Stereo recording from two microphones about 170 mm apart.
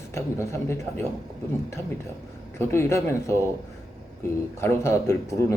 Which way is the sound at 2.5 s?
15° left (ahead or behind).